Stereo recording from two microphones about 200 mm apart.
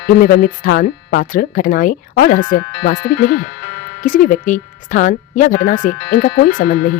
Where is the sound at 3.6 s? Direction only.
65° left (ahead or behind).